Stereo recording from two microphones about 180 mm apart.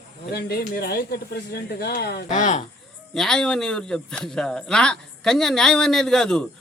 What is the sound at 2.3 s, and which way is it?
Speech, 45° left (ahead or behind).